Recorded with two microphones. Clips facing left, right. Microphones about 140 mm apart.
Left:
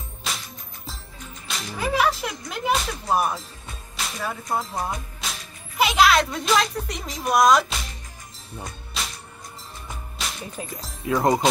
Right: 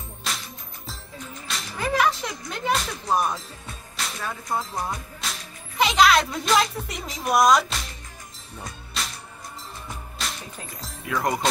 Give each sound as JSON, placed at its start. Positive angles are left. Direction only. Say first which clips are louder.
{"t": 0.3, "sound": "music", "louder": "even", "side_deg": 0}
{"t": 1.5, "sound": "music", "louder": "left 1 dB", "side_deg": 5}
{"t": 4.6, "sound": "speech", "louder": "left 1 dB", "side_deg": 0}
{"t": 8.6, "sound": "music", "louder": "right 1 dB", "side_deg": 0}
{"t": 10.2, "sound": "music", "louder": "even", "side_deg": 0}
{"t": 11.1, "sound": "speech", "louder": "left 5 dB", "side_deg": 25}